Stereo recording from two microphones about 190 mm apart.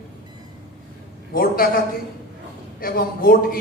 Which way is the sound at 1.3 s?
50° left (ahead or behind).